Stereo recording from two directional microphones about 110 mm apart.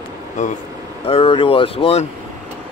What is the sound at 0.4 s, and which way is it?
Speech, 90° left.